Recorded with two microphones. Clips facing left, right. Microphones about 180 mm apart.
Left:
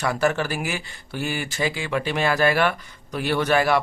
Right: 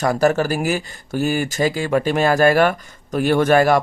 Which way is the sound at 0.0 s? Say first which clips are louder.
Right 6 dB; 40° right (ahead or behind).